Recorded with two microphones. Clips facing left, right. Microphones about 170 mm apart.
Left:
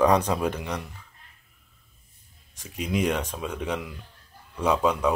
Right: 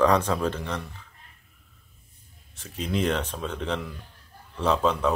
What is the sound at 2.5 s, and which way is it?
Speech, 10° left (ahead or behind).